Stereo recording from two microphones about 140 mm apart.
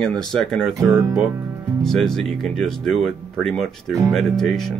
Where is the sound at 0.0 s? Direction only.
5° left (ahead or behind).